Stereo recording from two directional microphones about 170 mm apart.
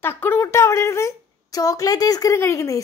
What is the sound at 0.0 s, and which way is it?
Speech, 10° left (ahead or behind).